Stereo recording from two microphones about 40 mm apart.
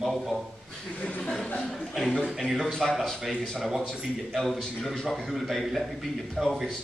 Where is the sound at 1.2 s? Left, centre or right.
Left.